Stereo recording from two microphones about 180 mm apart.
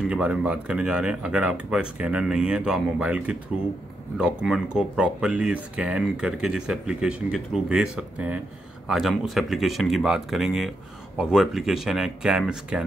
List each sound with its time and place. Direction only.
0.0 s speech: 5° right (ahead or behind)